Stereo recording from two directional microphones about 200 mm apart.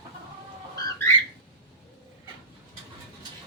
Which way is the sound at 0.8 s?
15° left (ahead or behind).